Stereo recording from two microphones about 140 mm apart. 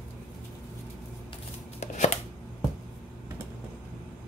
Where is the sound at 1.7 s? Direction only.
55° left (ahead or behind).